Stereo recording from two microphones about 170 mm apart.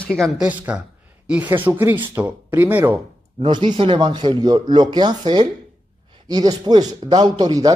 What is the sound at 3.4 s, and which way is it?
Speech, 25° right (ahead or behind).